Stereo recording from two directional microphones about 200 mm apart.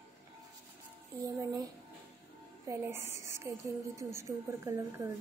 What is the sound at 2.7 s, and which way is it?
A woman's voice, 10° right (ahead or behind).